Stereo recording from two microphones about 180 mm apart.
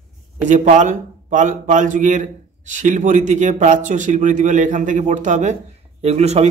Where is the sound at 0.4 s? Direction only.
40° right (ahead or behind).